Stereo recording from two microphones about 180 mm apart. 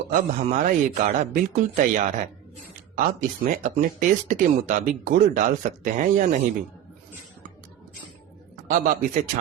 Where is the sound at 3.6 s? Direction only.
45° right (ahead or behind).